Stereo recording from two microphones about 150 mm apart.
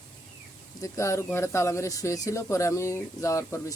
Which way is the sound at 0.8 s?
20° left (ahead or behind).